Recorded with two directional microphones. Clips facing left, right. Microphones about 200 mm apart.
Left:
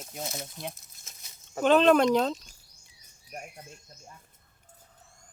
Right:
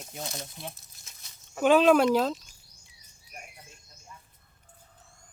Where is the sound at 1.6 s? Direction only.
5° right (ahead or behind).